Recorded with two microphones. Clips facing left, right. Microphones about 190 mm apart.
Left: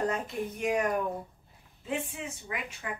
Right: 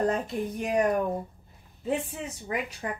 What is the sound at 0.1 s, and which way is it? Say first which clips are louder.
Speech: right 4 dB; 35° right (ahead or behind).